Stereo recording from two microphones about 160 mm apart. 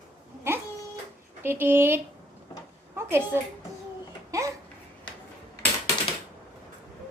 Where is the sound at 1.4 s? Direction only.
15° right (ahead or behind).